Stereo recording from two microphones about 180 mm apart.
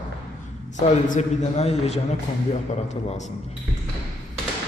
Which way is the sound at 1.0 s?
40° left (ahead or behind).